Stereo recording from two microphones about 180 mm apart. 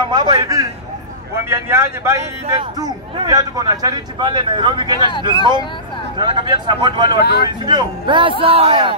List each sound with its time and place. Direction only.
0.0 s a man's voice: 25° right (ahead or behind)
6.1 s speech: 25° right (ahead or behind)
7.2 s speech: 65° left (ahead or behind)
7.4 s speech: 25° right (ahead or behind)